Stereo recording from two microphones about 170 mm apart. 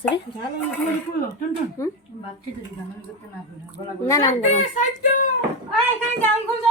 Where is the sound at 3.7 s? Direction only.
20° left (ahead or behind).